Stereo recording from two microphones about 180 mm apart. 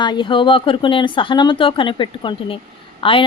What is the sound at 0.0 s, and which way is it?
A woman's voice, 25° left (ahead or behind).